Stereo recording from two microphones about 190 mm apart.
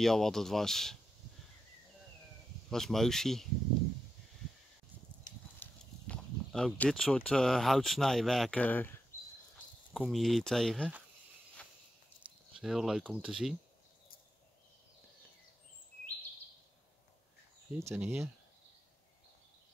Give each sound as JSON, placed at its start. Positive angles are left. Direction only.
{"t": 0.0, "sound": "speech", "side_deg": 0}
{"t": 2.7, "sound": "speech", "side_deg": 0}
{"t": 5.3, "sound": "a sound", "side_deg": 40}
{"t": 5.6, "sound": "speech", "side_deg": 5}
{"t": 9.9, "sound": "speech", "side_deg": 0}
{"t": 12.5, "sound": "speech", "side_deg": 0}
{"t": 17.7, "sound": "speech", "side_deg": -10}